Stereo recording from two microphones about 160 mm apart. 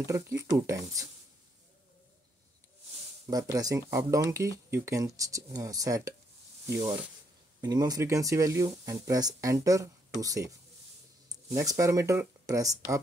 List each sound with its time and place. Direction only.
0.0 s speech: 20° right (ahead or behind)
3.5 s speech: 20° right (ahead or behind)